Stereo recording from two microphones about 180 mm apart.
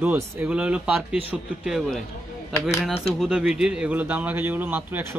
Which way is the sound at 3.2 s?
5° right (ahead or behind).